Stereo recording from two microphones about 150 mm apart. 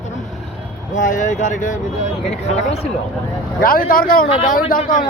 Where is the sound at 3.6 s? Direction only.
70° left (ahead or behind).